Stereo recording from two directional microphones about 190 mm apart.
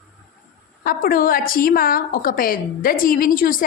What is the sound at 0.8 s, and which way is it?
A woman's voice, 50° left (ahead or behind).